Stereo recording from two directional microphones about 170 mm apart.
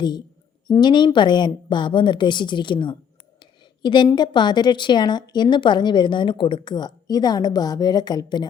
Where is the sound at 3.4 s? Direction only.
25° left (ahead or behind).